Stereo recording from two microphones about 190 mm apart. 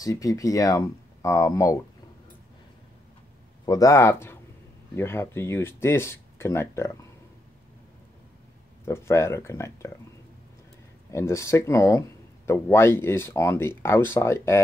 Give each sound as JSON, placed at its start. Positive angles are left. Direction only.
{"t": 0.0, "sound": "speech", "side_deg": 20}
{"t": 3.6, "sound": "speech", "side_deg": 20}
{"t": 8.8, "sound": "speech", "side_deg": 15}
{"t": 11.1, "sound": "speech", "side_deg": 15}